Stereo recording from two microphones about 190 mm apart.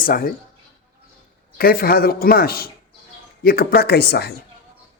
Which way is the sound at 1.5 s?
50° left (ahead or behind).